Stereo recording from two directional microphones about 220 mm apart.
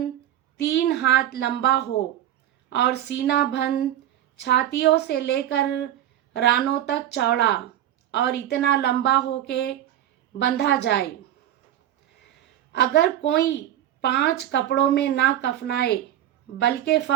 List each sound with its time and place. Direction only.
0.5 s speech: 50° left (ahead or behind)
12.7 s speech: 50° left (ahead or behind)